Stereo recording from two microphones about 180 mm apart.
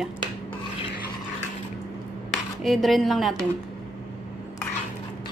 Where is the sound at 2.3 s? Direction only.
Centre (ahead or behind).